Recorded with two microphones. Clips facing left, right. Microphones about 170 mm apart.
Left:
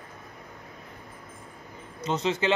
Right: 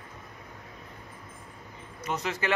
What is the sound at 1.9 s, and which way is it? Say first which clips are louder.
Speech: left 5 dB; 25° left (ahead or behind).